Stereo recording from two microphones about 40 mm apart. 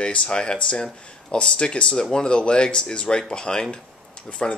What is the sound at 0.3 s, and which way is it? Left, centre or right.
Speech, left.